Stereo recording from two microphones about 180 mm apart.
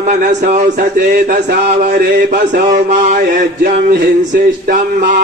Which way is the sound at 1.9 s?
60° right (ahead or behind).